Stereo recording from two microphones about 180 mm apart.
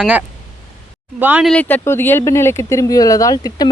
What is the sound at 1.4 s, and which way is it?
Speech, 5° left (ahead or behind).